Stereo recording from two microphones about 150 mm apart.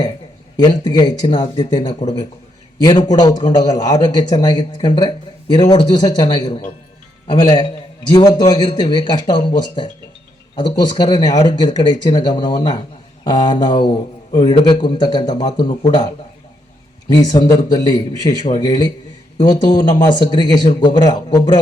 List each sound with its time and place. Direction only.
0.6 s a man's voice: 30° left (ahead or behind)
2.8 s a man's voice: 30° left (ahead or behind)
17.2 s a man's voice: 30° left (ahead or behind)